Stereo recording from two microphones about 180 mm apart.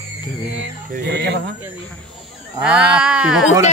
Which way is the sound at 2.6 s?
5° right (ahead or behind).